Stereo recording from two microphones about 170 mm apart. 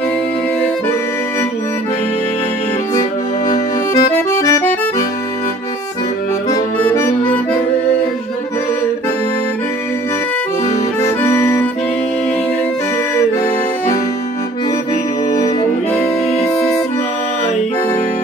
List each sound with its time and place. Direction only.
2.9 s accordion: 20° left (ahead or behind)
6.5 s accordion: 15° left (ahead or behind)
11.1 s music: 15° left (ahead or behind)
15.3 s music: 20° left (ahead or behind)